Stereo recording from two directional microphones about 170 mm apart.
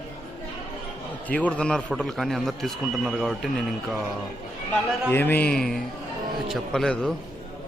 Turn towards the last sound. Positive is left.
turn(degrees=0)  # may be behind; listen again after turning